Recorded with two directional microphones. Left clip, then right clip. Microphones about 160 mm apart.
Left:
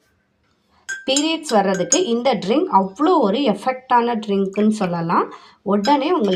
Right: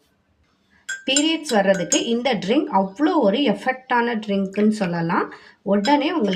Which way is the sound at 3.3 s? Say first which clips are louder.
Even; 25° right (ahead or behind).